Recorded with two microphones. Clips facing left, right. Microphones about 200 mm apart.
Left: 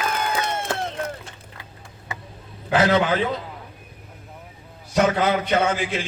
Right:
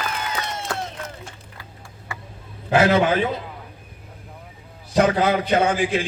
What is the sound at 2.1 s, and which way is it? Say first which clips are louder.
Vehicle: left 1 dB; 20° left (ahead or behind).